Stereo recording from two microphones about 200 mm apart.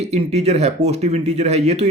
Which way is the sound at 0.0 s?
30° right (ahead or behind).